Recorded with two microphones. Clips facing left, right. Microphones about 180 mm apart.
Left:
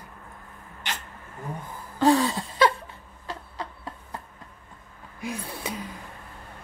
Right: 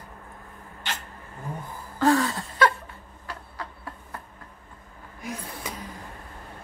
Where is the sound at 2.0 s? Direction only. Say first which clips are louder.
Left 1 dB; 20° left (ahead or behind).